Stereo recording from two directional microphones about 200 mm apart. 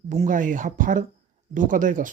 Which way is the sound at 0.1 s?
40° right (ahead or behind).